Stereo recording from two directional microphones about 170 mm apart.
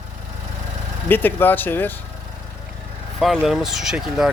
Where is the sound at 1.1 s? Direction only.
10° left (ahead or behind).